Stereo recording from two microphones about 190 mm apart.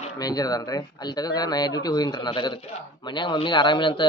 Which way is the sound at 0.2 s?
20° left (ahead or behind).